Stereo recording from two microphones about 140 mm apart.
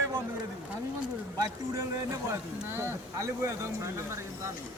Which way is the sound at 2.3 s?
15° right (ahead or behind).